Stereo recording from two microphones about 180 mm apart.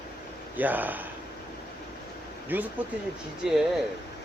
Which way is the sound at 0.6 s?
10° right (ahead or behind).